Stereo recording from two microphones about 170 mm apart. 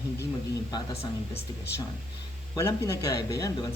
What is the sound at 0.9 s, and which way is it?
Speech, 35° left (ahead or behind).